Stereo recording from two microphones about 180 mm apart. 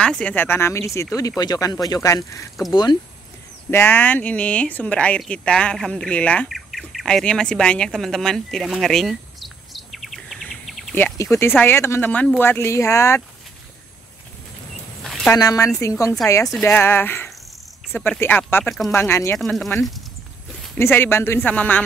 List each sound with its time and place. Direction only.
0.0 s speech: 5° left (ahead or behind); by 3.0 s 25° left (ahead or behind)
3.7 s speech: 10° left (ahead or behind)
11.0 s speech: 10° left (ahead or behind)
15.0 s a sound: centre (ahead or behind)
15.3 s speech: 20° left (ahead or behind)
19.3 s speech: centre (ahead or behind)
20.7 s speech: 10° left (ahead or behind)